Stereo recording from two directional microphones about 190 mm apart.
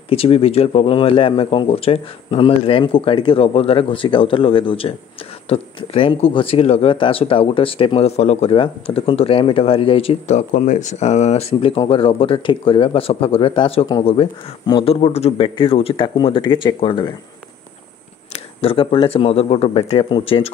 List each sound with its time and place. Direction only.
0.1 s speech: 30° left (ahead or behind)
18.3 s speech: 30° left (ahead or behind)